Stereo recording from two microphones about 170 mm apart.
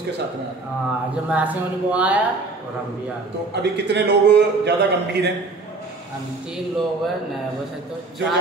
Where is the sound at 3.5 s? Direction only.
85° right.